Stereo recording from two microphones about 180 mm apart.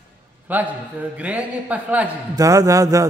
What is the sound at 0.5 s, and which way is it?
A man's voice, 10° right (ahead or behind).